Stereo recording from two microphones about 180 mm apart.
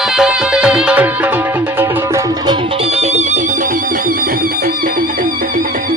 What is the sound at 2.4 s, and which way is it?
Music, 35° right (ahead or behind).